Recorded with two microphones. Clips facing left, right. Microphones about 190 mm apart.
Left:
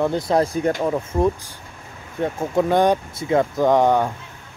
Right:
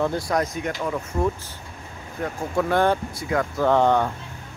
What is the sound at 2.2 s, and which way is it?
Speech, 20° left (ahead or behind).